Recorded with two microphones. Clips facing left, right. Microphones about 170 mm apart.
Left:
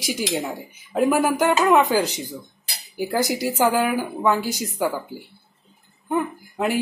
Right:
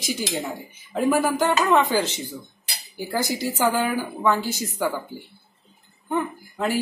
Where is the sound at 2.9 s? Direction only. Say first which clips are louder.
Left 3 dB; 15° left (ahead or behind).